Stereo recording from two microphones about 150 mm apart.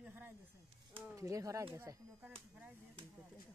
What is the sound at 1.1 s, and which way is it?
Speech, 20° right (ahead or behind).